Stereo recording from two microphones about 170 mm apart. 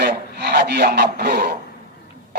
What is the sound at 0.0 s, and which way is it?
Rub, 75° right (ahead or behind).